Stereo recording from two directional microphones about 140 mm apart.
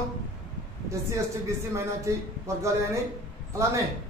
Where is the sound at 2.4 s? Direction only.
20° right (ahead or behind).